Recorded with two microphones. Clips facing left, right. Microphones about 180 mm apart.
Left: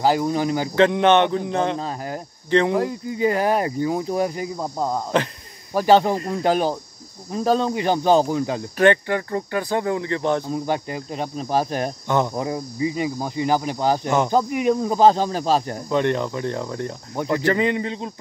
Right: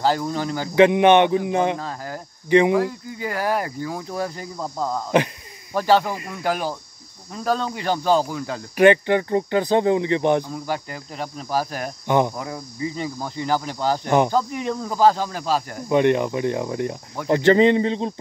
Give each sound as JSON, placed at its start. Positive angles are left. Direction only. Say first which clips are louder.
{"t": 0.0, "sound": "speech", "louder": "left 3 dB", "side_deg": 15}
{"t": 0.7, "sound": "speech", "louder": "right 3 dB", "side_deg": -15}
{"t": 1.8, "sound": "speech", "louder": "left 3 dB", "side_deg": 20}
{"t": 6.1, "sound": "speech", "louder": "left 5 dB", "side_deg": 35}
{"t": 8.7, "sound": "speech", "louder": "right 3 dB", "side_deg": -15}
{"t": 10.4, "sound": "speech", "louder": "left 4 dB", "side_deg": 20}
{"t": 15.9, "sound": "speech", "louder": "right 3 dB", "side_deg": -15}
{"t": 17.3, "sound": "speech", "louder": "right 6 dB", "side_deg": -25}